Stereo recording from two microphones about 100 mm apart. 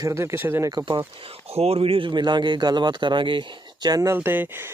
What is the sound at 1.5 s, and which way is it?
Speech, 90° right.